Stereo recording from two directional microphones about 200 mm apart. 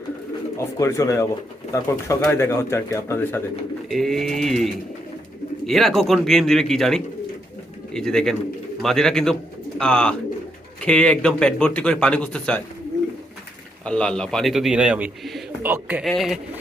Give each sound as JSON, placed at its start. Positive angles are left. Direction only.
{"t": 0.5, "sound": "speech", "side_deg": 15}
{"t": 3.8, "sound": "speech", "side_deg": 0}
{"t": 13.8, "sound": "speech", "side_deg": 5}